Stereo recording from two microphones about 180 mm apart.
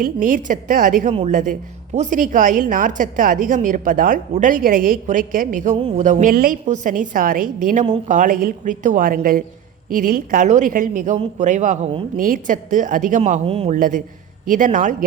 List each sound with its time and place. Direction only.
0.0 s a woman's voice: 50° right (ahead or behind); by 13.7 s 35° right (ahead or behind)
13.7 s a woman's voice: 50° right (ahead or behind)